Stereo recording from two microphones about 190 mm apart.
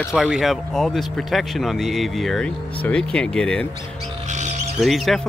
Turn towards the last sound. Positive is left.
turn(degrees=0)  # may be behind; listen again after turning